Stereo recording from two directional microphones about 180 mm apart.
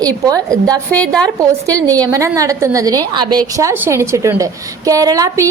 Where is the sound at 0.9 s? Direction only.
5° left (ahead or behind).